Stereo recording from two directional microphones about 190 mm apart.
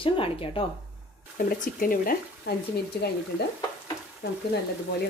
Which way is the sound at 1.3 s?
50° left (ahead or behind).